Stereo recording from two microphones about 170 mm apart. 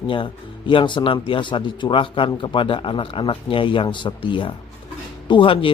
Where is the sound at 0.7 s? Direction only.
30° left (ahead or behind).